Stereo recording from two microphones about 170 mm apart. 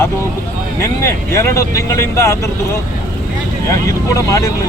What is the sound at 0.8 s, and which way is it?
Speech, 15° left (ahead or behind).